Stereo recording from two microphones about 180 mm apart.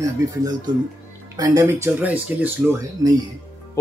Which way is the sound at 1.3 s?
20° right (ahead or behind).